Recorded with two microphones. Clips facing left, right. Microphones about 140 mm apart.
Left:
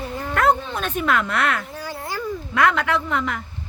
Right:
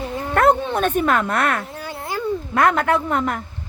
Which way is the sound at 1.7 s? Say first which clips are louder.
Right 2 dB; 25° right (ahead or behind).